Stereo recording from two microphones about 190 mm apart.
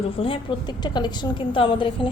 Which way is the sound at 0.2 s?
30° left (ahead or behind).